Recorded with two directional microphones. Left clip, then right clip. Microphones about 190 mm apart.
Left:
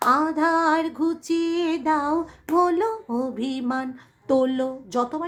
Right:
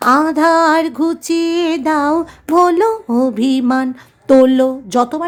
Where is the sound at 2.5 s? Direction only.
45° right (ahead or behind).